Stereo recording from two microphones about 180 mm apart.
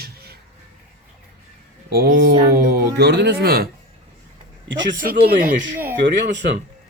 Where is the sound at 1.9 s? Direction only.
60° right (ahead or behind).